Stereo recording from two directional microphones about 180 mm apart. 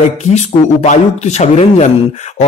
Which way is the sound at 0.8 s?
40° left (ahead or behind).